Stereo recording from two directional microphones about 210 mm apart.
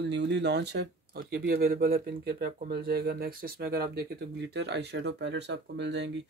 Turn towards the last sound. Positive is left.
turn(degrees=-55)  # may be behind; listen again after turning